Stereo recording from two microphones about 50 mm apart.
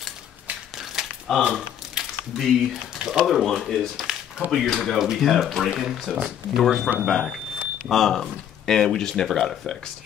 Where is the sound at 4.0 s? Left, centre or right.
Centre.